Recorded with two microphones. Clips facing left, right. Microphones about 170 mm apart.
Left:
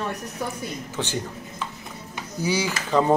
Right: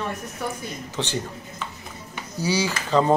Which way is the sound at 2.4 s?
10° left (ahead or behind).